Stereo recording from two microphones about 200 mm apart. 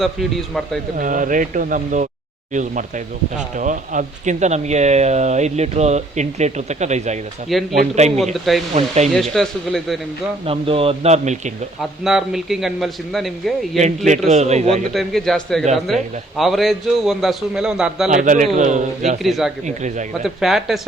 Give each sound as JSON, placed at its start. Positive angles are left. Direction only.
{"t": 0.0, "sound": "a man's voice", "side_deg": 0}
{"t": 0.9, "sound": "speech", "side_deg": -40}
{"t": 8.2, "sound": "a man's voice", "side_deg": 0}
{"t": 10.4, "sound": "speech", "side_deg": -30}
{"t": 11.8, "sound": "a man's voice", "side_deg": 0}
{"t": 13.7, "sound": "speech", "side_deg": -35}
{"t": 14.9, "sound": "a man's voice", "side_deg": 0}
{"t": 18.1, "sound": "speech", "side_deg": -40}
{"t": 19.2, "sound": "a man's voice", "side_deg": 0}
{"t": 19.6, "sound": "speech", "side_deg": -35}
{"t": 20.2, "sound": "a man's voice", "side_deg": 0}